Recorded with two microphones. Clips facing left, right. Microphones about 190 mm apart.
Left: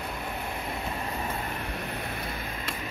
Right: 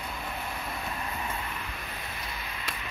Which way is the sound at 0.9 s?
30° left (ahead or behind).